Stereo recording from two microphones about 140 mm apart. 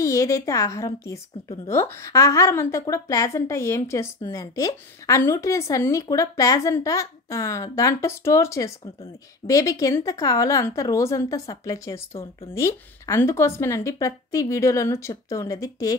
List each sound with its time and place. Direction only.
0.0 s a woman's voice: 20° left (ahead or behind)